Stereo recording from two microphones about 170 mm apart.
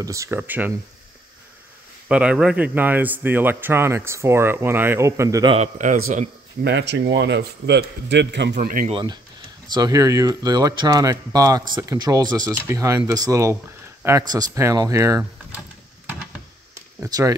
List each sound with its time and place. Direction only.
0.0 s a man's voice: 20° right (ahead or behind)
2.0 s a man's voice: 5° right (ahead or behind)
5.5 s speech: 45° right (ahead or behind)
6.6 s a man's voice: 90° right
8.5 s speech: 50° right (ahead or behind)
8.9 s a man's voice: 25° right (ahead or behind)
17.0 s speech: 20° right (ahead or behind)